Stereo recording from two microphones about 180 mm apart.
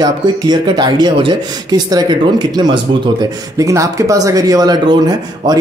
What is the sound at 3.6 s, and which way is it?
A man's voice, 15° right (ahead or behind).